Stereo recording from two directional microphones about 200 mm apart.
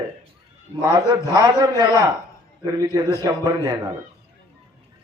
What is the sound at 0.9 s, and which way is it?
Speech, 20° right (ahead or behind).